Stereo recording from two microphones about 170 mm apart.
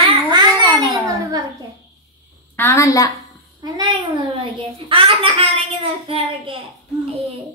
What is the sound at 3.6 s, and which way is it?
Child singing, 25° right (ahead or behind).